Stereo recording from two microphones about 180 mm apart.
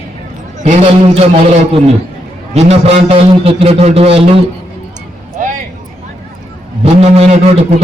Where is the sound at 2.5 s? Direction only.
35° right (ahead or behind).